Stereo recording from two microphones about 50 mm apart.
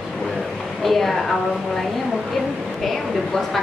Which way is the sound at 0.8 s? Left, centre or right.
Centre.